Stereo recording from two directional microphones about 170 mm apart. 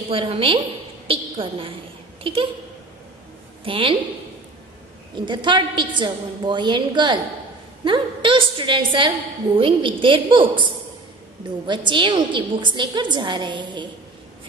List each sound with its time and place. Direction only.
0.1 s a woman's voice: 30° right (ahead or behind)
1.0 s a sound: 30° right (ahead or behind)
2.3 s a woman's voice: 30° right (ahead or behind)
3.6 s a woman's voice: 30° right (ahead or behind)
5.1 s a woman's voice: 25° right (ahead or behind)